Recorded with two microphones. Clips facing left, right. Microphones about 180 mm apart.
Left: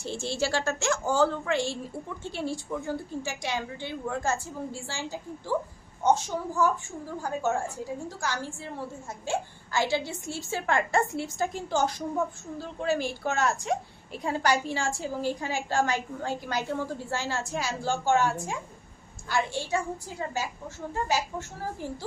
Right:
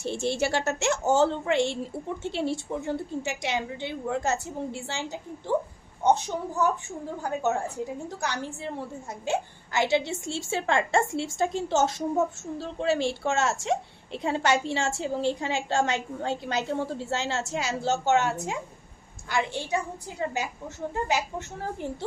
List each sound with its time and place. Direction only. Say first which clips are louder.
0.0 s a child's voice: right 3 dB; 20° right (ahead or behind)